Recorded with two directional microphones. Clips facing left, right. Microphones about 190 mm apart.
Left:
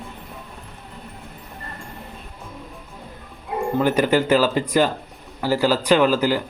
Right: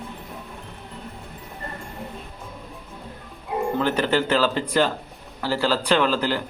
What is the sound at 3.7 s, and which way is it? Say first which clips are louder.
A man's voice: left 5 dB; 10° left (ahead or behind).